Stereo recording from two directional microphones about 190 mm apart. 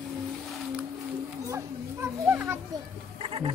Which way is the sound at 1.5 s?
15° right (ahead or behind).